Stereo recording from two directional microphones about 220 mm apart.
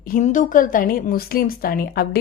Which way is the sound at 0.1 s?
35° left (ahead or behind).